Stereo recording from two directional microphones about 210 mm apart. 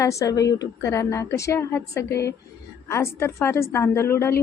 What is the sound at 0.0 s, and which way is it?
A woman's voice, 15° left (ahead or behind).